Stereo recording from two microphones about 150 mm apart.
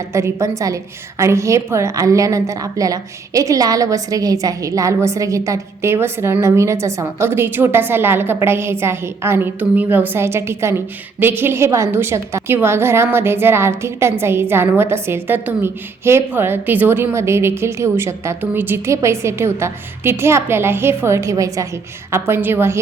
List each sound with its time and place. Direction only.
0.1 s a woman's voice: 15° right (ahead or behind)